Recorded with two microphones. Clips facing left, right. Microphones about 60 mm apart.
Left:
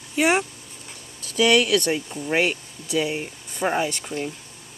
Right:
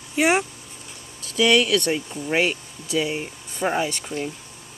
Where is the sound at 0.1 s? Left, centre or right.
Centre.